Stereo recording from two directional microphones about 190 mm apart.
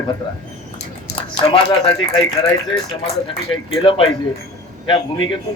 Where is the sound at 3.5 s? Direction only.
30° left (ahead or behind).